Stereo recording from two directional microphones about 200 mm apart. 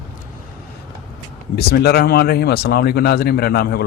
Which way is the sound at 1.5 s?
50° left (ahead or behind).